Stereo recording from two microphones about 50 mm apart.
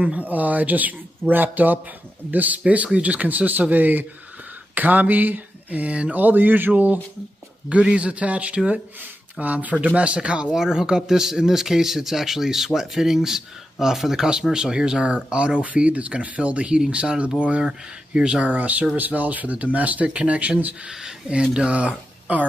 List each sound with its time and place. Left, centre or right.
0.0 s speech: right
6.1 s speech: right
10.5 s speech: centre; by 20.9 s right
20.9 s speech: centre; by 22.5 s right